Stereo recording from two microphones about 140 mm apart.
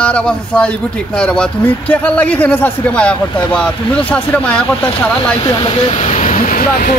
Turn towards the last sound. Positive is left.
turn(degrees=80)